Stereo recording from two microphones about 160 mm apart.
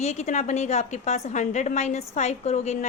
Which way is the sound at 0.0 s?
45° left (ahead or behind).